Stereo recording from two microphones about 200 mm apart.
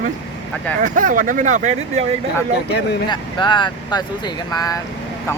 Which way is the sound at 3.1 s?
25° left (ahead or behind).